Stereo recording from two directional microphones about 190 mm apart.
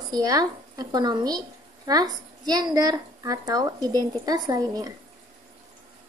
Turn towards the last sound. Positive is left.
turn(degrees=-20)  # may be behind; listen again after turning